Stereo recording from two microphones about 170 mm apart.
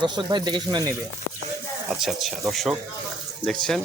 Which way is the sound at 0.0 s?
25° right (ahead or behind).